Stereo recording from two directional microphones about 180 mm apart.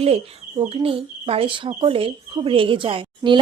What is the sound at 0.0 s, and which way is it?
Speech, 35° right (ahead or behind).